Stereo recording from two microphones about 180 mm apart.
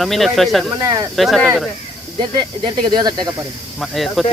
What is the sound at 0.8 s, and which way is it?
Speech, 20° right (ahead or behind).